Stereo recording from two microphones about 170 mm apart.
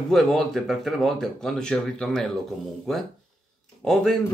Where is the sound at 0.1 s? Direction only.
Centre (ahead or behind).